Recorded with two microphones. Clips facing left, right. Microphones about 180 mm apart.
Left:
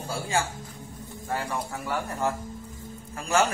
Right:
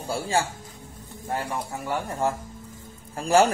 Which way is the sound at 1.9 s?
30° right (ahead or behind).